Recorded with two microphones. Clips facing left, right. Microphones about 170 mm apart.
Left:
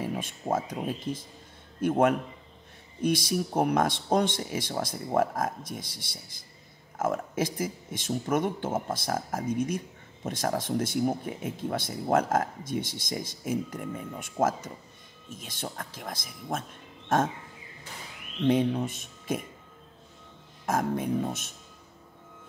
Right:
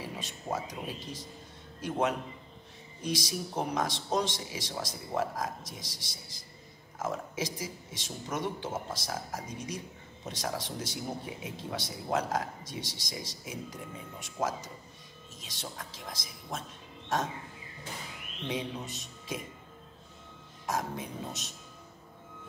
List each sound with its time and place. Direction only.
0.0 s speech: 50° left (ahead or behind)
18.5 s speech: 55° left (ahead or behind)
20.6 s speech: 55° left (ahead or behind)